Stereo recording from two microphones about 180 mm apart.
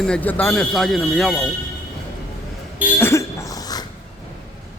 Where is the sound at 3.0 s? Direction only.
15° left (ahead or behind).